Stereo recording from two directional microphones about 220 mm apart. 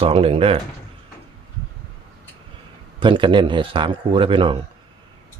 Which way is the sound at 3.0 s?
20° right (ahead or behind).